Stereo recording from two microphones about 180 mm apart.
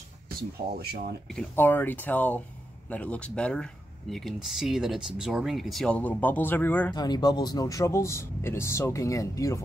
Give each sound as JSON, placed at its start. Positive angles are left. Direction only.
{"t": 0.4, "sound": "speech", "side_deg": -60}
{"t": 1.3, "sound": "speech", "side_deg": 10}
{"t": 6.9, "sound": "speech", "side_deg": 25}